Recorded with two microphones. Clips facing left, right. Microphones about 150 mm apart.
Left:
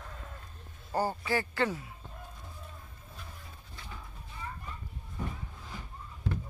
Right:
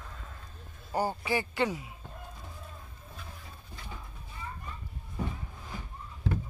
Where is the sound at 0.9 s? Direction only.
15° right (ahead or behind).